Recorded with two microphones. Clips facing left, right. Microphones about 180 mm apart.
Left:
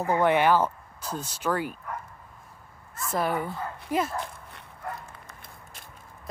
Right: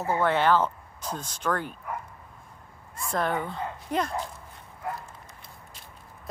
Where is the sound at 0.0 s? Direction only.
15° left (ahead or behind).